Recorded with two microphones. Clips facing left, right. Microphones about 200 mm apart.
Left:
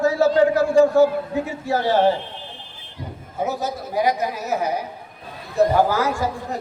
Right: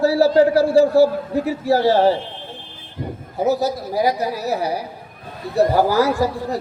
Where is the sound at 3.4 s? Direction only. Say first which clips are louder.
Right 7 dB; 35° right (ahead or behind).